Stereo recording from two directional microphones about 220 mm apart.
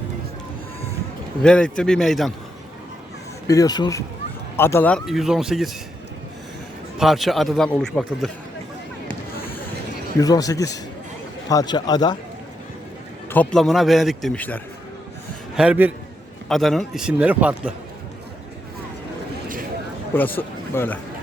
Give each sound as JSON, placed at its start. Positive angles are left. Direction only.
{"t": 1.4, "sound": "a man's voice", "side_deg": 5}
{"t": 3.4, "sound": "a man's voice", "side_deg": 15}
{"t": 7.0, "sound": "a man's voice", "side_deg": 0}
{"t": 9.3, "sound": "a sound", "side_deg": 45}
{"t": 10.2, "sound": "a man's voice", "side_deg": 15}
{"t": 13.3, "sound": "a man's voice", "side_deg": 5}
{"t": 15.5, "sound": "a man's voice", "side_deg": -5}
{"t": 20.1, "sound": "a man's voice", "side_deg": 10}